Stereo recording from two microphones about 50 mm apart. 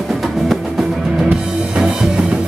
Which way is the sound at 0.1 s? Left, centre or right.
Centre.